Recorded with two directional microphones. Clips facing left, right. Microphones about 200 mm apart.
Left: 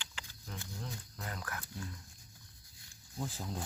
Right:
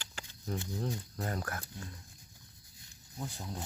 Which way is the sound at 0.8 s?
35° right (ahead or behind).